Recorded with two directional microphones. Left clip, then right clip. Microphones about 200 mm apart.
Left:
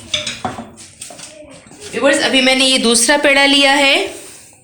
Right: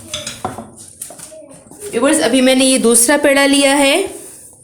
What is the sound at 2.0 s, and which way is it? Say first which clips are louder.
Speech: left 1 dB; 60° right (ahead or behind).